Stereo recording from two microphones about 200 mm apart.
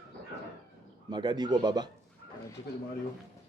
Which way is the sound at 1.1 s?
20° right (ahead or behind).